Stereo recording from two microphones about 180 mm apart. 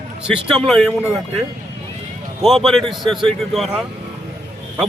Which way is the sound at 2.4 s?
Centre (ahead or behind).